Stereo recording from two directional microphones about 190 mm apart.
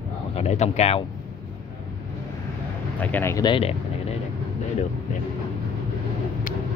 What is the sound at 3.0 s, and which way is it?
Speech, 10° left (ahead or behind).